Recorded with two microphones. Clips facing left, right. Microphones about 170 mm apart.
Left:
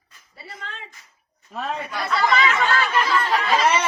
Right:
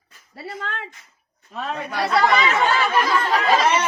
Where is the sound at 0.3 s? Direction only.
65° right (ahead or behind).